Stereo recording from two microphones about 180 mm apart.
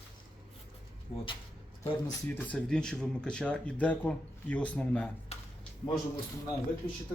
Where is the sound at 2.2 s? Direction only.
10° left (ahead or behind).